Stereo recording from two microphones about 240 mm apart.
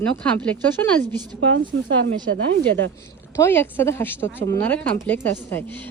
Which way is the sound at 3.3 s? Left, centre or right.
Centre.